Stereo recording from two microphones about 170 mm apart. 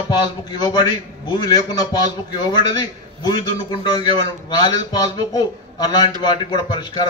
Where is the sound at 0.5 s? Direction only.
25° left (ahead or behind).